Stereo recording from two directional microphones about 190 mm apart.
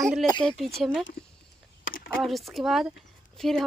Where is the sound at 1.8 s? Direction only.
50° left (ahead or behind).